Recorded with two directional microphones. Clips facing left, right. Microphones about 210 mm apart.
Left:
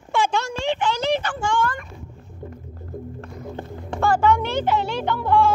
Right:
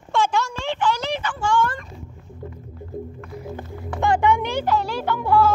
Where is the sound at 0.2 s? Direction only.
20° left (ahead or behind).